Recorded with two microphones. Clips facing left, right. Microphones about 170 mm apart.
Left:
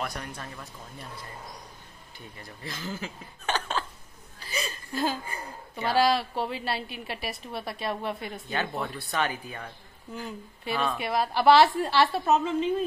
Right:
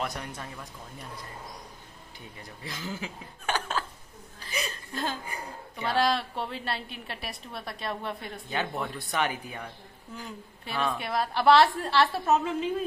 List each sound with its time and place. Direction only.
0.0 s speech: 20° right (ahead or behind)
2.6 s speech: 15° right (ahead or behind)
4.9 s chuckle: 10° left (ahead or behind)
5.8 s a woman's voice: centre (ahead or behind)
9.0 s speech: 15° right (ahead or behind)
10.1 s a woman's voice: centre (ahead or behind)